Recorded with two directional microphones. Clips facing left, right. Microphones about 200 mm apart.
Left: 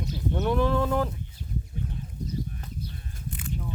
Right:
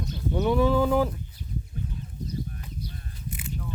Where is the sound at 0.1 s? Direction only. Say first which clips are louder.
Right 2 dB; centre (ahead or behind).